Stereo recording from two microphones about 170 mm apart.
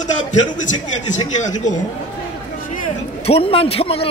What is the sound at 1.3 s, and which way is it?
Speech, 45° left (ahead or behind).